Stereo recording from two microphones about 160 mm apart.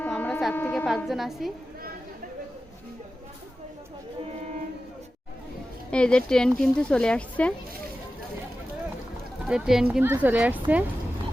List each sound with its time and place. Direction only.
0.0 s a sound: 10° left (ahead or behind)
0.9 s speech: centre (ahead or behind)
5.9 s speech: 5° left (ahead or behind)
9.5 s a woman's voice: 5° right (ahead or behind)